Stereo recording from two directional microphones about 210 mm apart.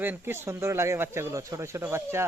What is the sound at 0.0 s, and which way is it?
Speech, 10° right (ahead or behind).